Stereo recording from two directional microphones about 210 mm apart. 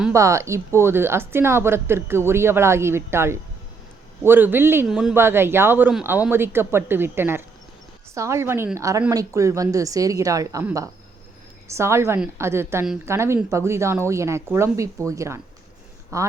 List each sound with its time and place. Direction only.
0.1 s speech: 15° right (ahead or behind)